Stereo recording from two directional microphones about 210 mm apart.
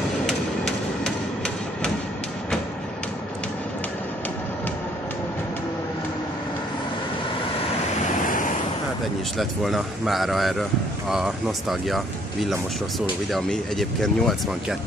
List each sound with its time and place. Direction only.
0.3 s a sound: centre (ahead or behind)
8.0 s waves: 40° left (ahead or behind)
9.4 s speech: centre (ahead or behind)